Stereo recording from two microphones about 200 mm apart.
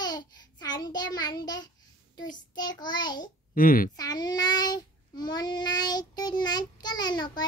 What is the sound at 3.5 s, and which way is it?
Speech, 45° left (ahead or behind).